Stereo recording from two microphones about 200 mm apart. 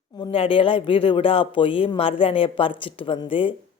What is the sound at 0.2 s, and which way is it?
A woman's voice, 25° left (ahead or behind).